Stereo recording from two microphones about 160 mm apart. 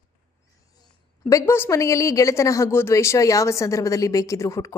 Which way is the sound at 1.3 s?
15° left (ahead or behind).